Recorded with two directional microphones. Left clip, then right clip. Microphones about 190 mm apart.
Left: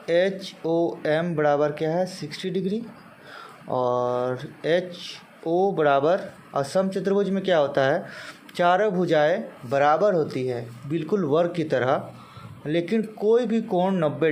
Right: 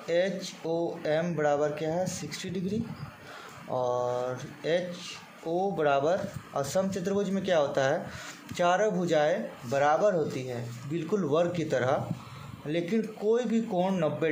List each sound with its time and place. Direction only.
0.0 s speech: 20° left (ahead or behind)